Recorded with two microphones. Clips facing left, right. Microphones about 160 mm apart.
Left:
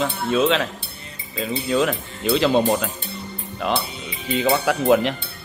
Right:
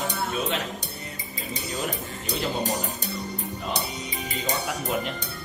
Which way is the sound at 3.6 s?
75° left (ahead or behind).